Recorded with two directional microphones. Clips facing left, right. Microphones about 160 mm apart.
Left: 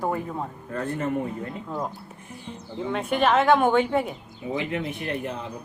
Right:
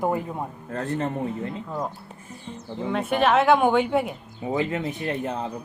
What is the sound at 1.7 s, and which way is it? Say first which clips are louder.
A woman's voice: right 1 dB; centre (ahead or behind).